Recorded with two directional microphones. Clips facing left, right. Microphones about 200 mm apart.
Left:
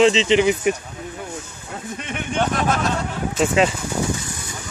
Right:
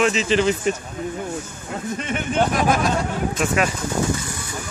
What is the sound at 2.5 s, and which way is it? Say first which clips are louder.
Speech: right 2 dB; 10° right (ahead or behind).